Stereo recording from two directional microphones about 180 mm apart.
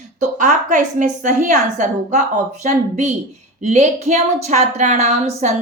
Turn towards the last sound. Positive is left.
turn(degrees=-40)  # may be behind; listen again after turning